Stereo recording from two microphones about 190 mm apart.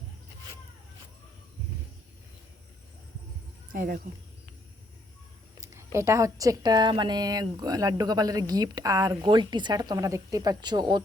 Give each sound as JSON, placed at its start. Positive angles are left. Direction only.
{"t": 3.7, "sound": "speech", "side_deg": -45}
{"t": 5.5, "sound": "a woman's voice", "side_deg": -15}